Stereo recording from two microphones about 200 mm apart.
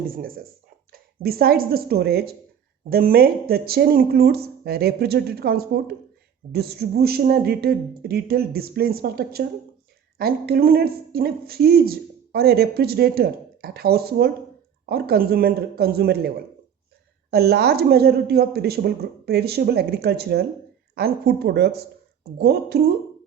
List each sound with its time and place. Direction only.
0.1 s speech: 45° right (ahead or behind)
17.3 s a woman's voice: 55° right (ahead or behind)